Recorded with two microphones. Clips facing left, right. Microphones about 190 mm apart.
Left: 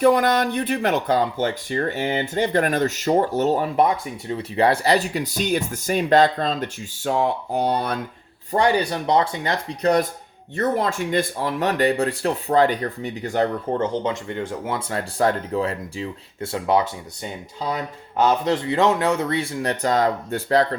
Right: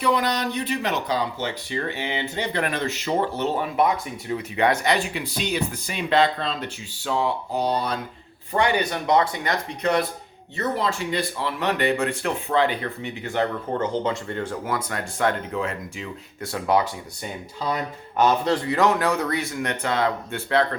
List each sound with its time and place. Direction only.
0.0 s speech: 50° left (ahead or behind)
8.5 s speech: 35° left (ahead or behind)
10.5 s speech: 50° left (ahead or behind)
14.0 s speech: 15° left (ahead or behind); by 20.7 s 40° left (ahead or behind)